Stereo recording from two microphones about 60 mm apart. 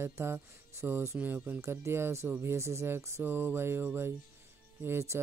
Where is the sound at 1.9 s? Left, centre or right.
Right.